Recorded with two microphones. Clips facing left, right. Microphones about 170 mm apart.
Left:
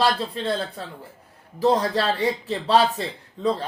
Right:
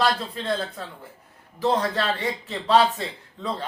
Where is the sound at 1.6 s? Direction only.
35° left (ahead or behind).